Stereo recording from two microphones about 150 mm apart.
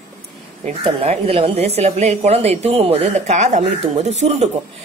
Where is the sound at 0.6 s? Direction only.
45° right (ahead or behind).